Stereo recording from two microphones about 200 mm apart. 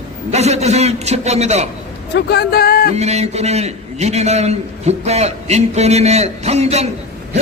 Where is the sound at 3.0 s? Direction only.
35° right (ahead or behind).